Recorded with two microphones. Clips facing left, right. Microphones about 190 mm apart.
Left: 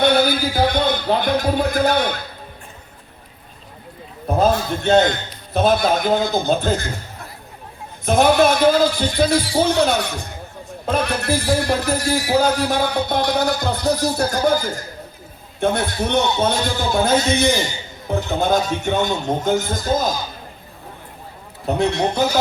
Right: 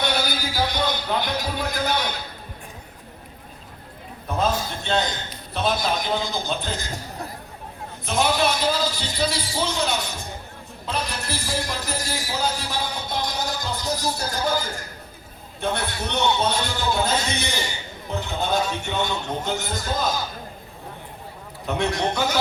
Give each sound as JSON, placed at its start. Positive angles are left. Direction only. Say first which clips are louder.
{"t": 0.0, "sound": "a man's voice", "louder": "left 9 dB", "side_deg": 55}
{"t": 4.3, "sound": "a sound", "louder": "left 7 dB", "side_deg": 40}
{"t": 4.5, "sound": "a man's voice", "louder": "left 9 dB", "side_deg": 55}
{"t": 8.0, "sound": "a man's voice", "louder": "left 8 dB", "side_deg": 50}
{"t": 15.6, "sound": "a man's voice", "louder": "left 7 dB", "side_deg": 50}
{"t": 21.7, "sound": "a man's voice", "louder": "left 5 dB", "side_deg": 35}